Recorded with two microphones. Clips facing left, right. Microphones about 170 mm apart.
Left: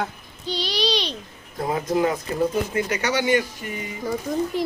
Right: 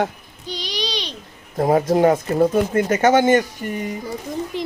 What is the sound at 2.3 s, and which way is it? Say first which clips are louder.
Speech: right 6 dB; 55° right (ahead or behind).